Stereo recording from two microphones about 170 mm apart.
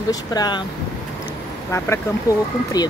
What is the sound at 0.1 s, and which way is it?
Speech, 25° left (ahead or behind).